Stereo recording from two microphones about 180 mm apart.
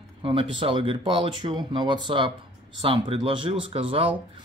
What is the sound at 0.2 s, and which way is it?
Speech, 30° right (ahead or behind).